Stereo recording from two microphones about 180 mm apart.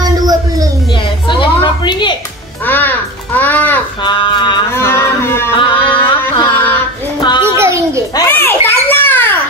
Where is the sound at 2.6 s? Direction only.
10° left (ahead or behind).